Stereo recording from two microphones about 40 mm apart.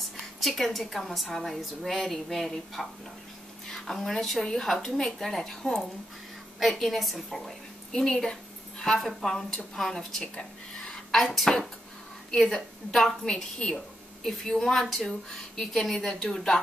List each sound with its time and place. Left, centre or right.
0.4 s a woman's voice: centre
8.7 s dog: centre
9.2 s speech: centre
10.2 s speech: left
10.9 s a sound: centre
12.3 s speech: centre
13.6 s speech: left
14.2 s speech: centre